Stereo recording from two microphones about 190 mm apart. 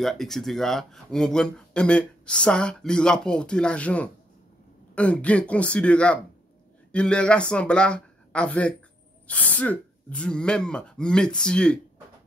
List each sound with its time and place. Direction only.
0.0 s speech: centre (ahead or behind)